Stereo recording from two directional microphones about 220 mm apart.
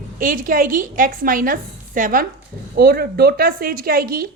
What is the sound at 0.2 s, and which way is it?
A woman's voice, 40° right (ahead or behind).